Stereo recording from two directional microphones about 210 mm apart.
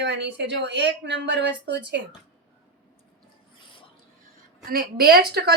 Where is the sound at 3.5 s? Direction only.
25° left (ahead or behind).